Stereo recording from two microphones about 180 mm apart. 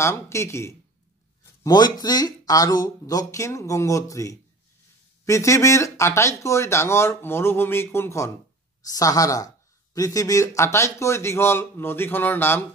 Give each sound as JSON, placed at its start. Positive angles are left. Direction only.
{"t": 0.0, "sound": "speech", "side_deg": 15}